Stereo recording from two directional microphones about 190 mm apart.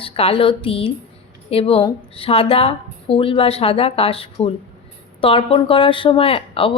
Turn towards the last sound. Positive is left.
turn(degrees=30)  # may be behind; listen again after turning